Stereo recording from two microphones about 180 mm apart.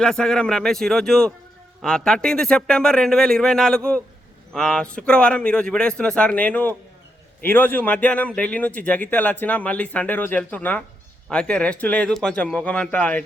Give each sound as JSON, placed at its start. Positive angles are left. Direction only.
{"t": 0.0, "sound": "a man's voice", "side_deg": 5}